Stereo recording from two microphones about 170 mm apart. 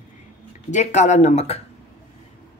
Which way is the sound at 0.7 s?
45° left (ahead or behind).